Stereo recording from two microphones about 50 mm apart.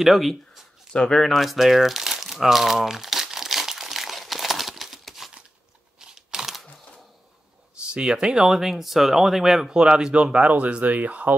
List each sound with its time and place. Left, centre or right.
0.0 s speech: centre
0.9 s speech: centre
1.2 s crumpling: centre
5.9 s computer keyboard: centre
7.7 s speech: centre